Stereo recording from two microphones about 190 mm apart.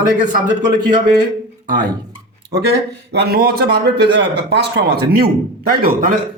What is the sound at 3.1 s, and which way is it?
A man's voice, 55° right (ahead or behind).